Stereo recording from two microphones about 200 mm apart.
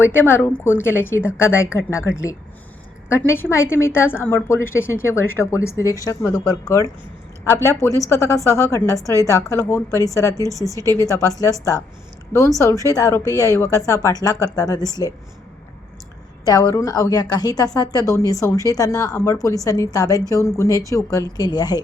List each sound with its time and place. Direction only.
0.0 s speech: 10° left (ahead or behind)
3.1 s a woman's voice: 10° left (ahead or behind)
10.5 s a woman's voice: 15° right (ahead or behind)
11.1 s speech: 15° left (ahead or behind)
12.5 s a woman's voice: 15° left (ahead or behind)
16.5 s a woman's voice: 15° left (ahead or behind)